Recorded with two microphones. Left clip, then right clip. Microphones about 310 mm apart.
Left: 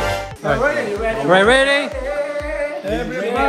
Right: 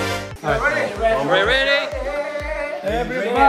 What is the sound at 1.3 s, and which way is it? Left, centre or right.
Speech, centre.